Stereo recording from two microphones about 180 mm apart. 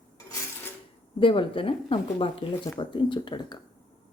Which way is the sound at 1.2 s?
30° left (ahead or behind).